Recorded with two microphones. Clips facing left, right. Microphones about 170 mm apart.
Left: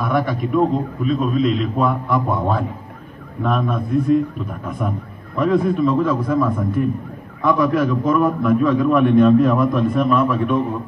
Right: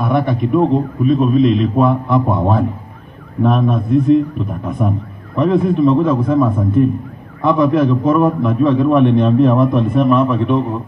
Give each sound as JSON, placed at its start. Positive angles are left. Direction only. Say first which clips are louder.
{"t": 0.0, "sound": "a man's voice", "louder": "right 4 dB", "side_deg": -25}